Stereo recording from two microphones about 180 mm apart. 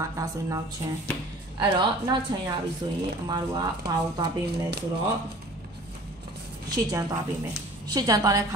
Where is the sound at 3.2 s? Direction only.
20° right (ahead or behind).